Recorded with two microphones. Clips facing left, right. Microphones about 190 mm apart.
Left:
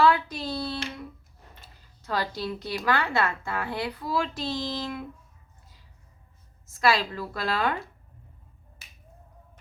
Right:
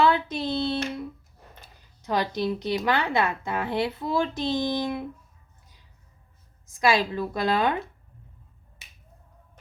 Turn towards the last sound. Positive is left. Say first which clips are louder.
# right 4 dB
turn(degrees=-20)  # may be behind; listen again after turning